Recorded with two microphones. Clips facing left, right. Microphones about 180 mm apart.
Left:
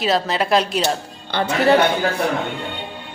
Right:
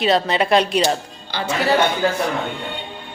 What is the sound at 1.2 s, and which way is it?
Speech, 55° left (ahead or behind).